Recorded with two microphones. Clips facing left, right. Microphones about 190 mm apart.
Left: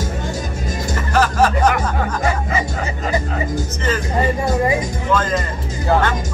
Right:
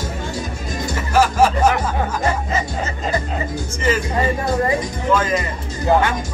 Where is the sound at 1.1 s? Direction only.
10° right (ahead or behind).